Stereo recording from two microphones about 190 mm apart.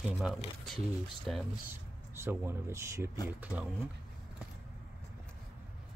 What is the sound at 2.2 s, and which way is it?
Speech, 15° right (ahead or behind).